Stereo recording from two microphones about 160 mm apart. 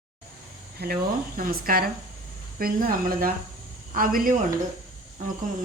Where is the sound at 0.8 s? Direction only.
80° right.